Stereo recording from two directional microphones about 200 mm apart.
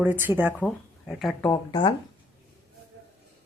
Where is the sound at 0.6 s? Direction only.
Centre (ahead or behind).